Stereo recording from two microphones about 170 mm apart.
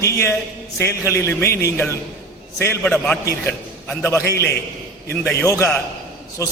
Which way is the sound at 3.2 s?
15° left (ahead or behind).